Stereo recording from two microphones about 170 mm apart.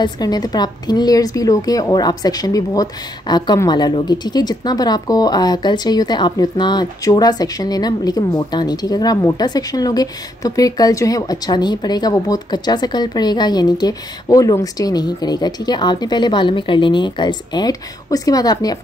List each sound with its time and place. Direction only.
0.0 s a woman's voice: 25° left (ahead or behind)